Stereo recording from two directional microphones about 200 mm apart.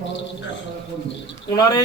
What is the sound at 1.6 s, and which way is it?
Speech, 20° left (ahead or behind).